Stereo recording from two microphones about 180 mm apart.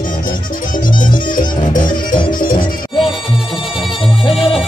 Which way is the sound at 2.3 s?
50° left (ahead or behind).